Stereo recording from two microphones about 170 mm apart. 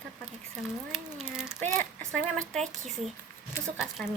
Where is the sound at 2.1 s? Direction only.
5° left (ahead or behind).